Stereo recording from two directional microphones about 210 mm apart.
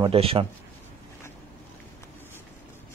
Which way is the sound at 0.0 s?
25° right (ahead or behind).